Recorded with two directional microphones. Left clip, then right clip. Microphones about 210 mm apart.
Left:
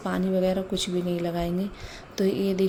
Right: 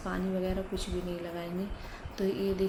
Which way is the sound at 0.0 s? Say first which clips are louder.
Left 8 dB; 40° left (ahead or behind).